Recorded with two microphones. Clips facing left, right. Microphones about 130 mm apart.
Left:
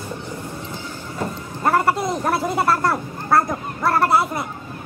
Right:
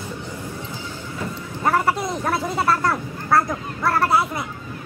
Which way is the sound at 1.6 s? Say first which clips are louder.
Left 2 dB; centre (ahead or behind).